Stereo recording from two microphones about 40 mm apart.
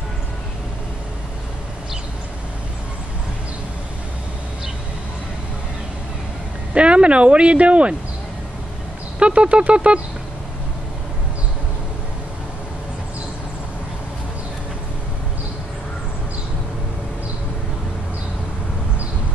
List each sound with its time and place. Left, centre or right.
6.7 s speech: right
9.2 s speech: right